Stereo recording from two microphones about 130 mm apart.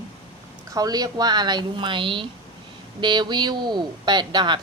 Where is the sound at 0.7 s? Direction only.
30° right (ahead or behind).